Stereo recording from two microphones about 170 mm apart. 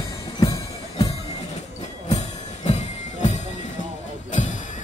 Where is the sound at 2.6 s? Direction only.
40° left (ahead or behind).